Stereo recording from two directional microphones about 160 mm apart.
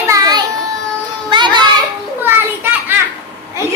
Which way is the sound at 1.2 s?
30° right (ahead or behind).